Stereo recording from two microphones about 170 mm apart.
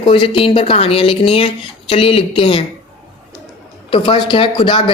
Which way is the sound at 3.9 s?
30° left (ahead or behind).